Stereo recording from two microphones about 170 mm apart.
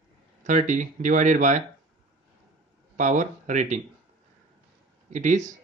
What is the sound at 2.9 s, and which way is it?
Speech, 45° right (ahead or behind).